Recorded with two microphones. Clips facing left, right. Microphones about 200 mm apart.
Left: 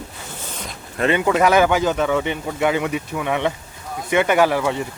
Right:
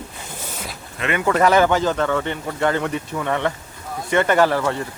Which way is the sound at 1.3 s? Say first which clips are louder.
Right 1 dB; 5° left (ahead or behind).